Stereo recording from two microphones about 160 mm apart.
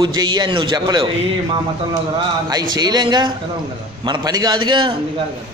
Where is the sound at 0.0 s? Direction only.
25° right (ahead or behind).